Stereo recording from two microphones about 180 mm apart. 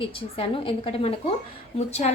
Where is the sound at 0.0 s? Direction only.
30° left (ahead or behind).